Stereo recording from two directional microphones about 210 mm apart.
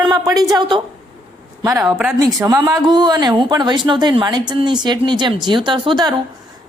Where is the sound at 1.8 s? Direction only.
Centre (ahead or behind).